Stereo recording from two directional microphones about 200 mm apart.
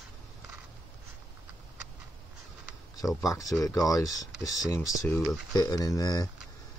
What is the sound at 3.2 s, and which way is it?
Speech, 15° left (ahead or behind).